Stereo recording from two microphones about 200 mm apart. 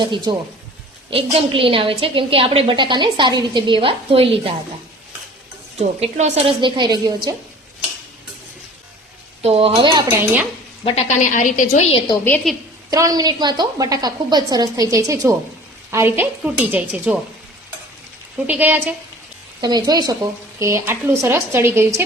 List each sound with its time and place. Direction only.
0.0 s a woman's voice: 20° right (ahead or behind)
6.0 s a woman's voice: 35° right (ahead or behind)
9.4 s a woman's voice: 30° right (ahead or behind)
10.8 s a woman's voice: 35° left (ahead or behind)
12.2 s a woman's voice: 5° left (ahead or behind)
12.9 s a woman's voice: 20° right (ahead or behind)
18.4 s a woman's voice: 10° right (ahead or behind)
19.6 s a woman's voice: 20° right (ahead or behind)